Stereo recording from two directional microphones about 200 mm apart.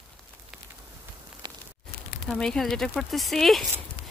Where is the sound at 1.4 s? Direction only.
25° right (ahead or behind).